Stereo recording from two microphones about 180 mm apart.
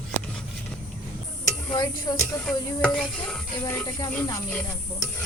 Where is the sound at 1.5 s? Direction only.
25° left (ahead or behind).